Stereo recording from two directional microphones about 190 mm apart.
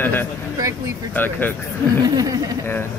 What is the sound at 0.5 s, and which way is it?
Speech, 15° right (ahead or behind).